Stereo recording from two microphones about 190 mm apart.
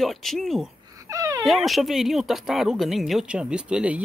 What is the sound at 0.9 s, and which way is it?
Wail, 15° right (ahead or behind).